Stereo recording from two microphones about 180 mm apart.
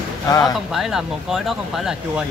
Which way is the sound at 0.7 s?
5° right (ahead or behind).